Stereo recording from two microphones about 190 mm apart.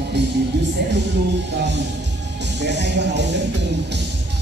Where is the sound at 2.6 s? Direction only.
65° right (ahead or behind).